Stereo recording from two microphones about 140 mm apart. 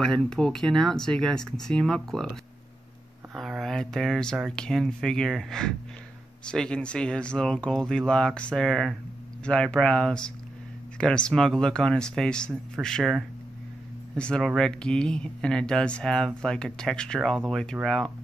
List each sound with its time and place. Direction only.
0.0 s speech: 5° left (ahead or behind)
3.3 s speech: centre (ahead or behind)